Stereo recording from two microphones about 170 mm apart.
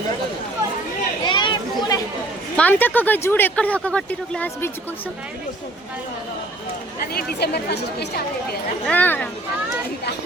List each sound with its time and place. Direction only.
1.2 s chatter: 25° left (ahead or behind)
2.6 s speech: 10° left (ahead or behind)
7.1 s a woman's voice: 65° left (ahead or behind)
8.9 s speech: 10° left (ahead or behind)